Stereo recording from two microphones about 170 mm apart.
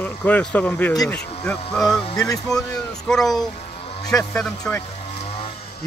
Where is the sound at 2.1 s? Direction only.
20° left (ahead or behind).